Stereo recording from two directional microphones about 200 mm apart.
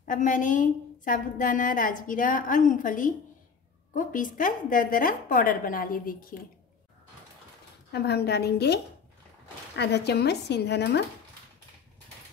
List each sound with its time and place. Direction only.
0.0 s a woman's voice: 40° left (ahead or behind)
7.9 s speech: 55° left (ahead or behind)